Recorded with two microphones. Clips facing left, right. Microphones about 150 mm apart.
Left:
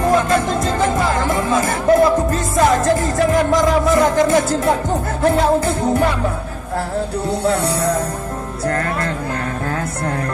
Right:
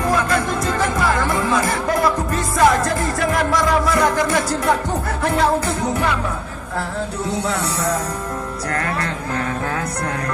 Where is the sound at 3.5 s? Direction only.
20° left (ahead or behind).